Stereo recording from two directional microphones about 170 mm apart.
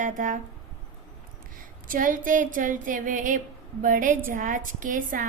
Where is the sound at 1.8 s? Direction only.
50° right (ahead or behind).